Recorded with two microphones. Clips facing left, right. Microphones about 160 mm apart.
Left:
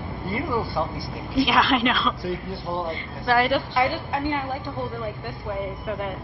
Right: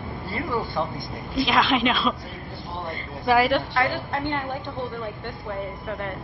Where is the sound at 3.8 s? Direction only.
15° left (ahead or behind).